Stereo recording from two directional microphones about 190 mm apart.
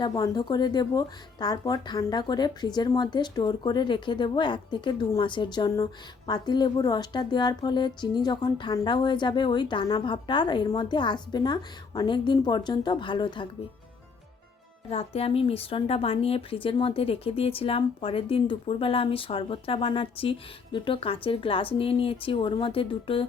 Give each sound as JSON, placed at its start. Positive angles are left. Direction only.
{"t": 0.0, "sound": "speech", "side_deg": 20}
{"t": 14.8, "sound": "speech", "side_deg": 30}